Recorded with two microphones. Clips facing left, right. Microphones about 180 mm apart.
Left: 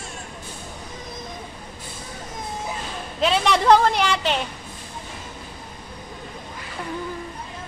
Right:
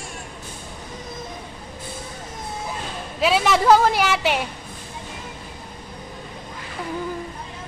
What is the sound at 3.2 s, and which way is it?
A woman's voice, 5° right (ahead or behind).